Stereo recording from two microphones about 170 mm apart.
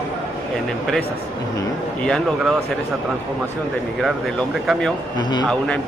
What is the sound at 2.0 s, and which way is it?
Speech, 5° left (ahead or behind).